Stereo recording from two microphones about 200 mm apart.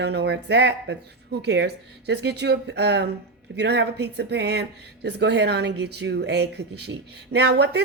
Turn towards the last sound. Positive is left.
turn(degrees=-55)  # may be behind; listen again after turning